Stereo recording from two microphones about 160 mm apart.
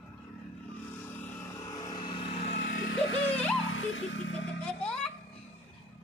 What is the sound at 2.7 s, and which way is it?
Vehicle, 90° left.